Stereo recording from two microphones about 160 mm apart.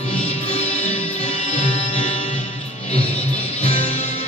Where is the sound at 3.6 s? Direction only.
40° left (ahead or behind).